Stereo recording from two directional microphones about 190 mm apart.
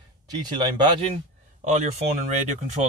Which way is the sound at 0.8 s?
30° right (ahead or behind).